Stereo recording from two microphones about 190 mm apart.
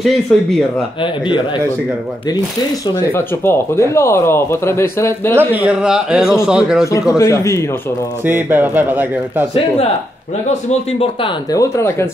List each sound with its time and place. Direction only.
0.3 s a man's voice: 5° left (ahead or behind)
3.2 s speech: 15° left (ahead or behind)
5.4 s a man's voice: 10° right (ahead or behind)
7.2 s speech: 15° left (ahead or behind)
8.3 s speech: 10° right (ahead or behind)
11.5 s speech: 15° left (ahead or behind)